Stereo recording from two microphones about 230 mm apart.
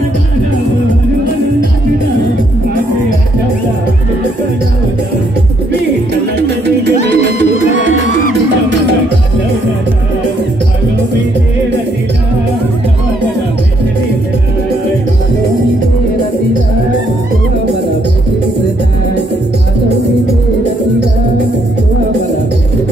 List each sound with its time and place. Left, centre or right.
6.3 s music: right
7.0 s music: left